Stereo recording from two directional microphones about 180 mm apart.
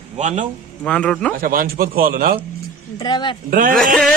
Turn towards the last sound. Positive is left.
turn(degrees=5)  # may be behind; listen again after turning